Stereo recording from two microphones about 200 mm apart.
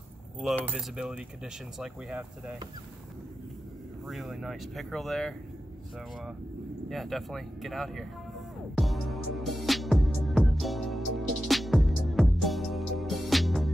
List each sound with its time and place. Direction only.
0.4 s speech: 5° left (ahead or behind)
4.1 s speech: centre (ahead or behind)
6.9 s speech: centre (ahead or behind)
8.7 s music: centre (ahead or behind)